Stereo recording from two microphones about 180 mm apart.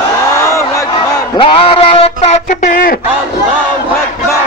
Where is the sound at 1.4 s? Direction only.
30° left (ahead or behind).